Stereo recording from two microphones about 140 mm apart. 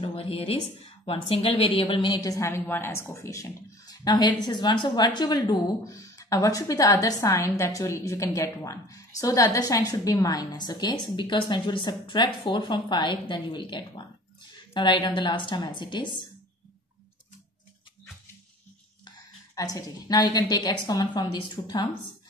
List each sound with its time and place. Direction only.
0.0 s a woman's voice: 40° left (ahead or behind)
19.0 s a woman's voice: 25° left (ahead or behind)